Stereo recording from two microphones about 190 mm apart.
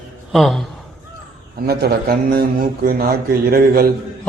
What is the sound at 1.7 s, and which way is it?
A man's voice, 55° right (ahead or behind).